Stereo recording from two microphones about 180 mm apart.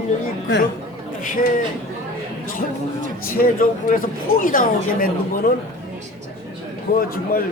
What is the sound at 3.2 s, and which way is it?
Speech, 55° left (ahead or behind).